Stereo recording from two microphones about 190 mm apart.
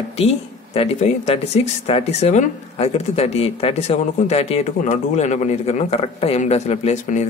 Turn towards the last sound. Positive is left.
turn(degrees=40)  # may be behind; listen again after turning